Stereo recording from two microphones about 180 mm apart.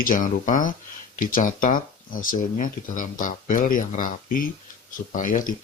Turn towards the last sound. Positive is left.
turn(degrees=45)  # may be behind; listen again after turning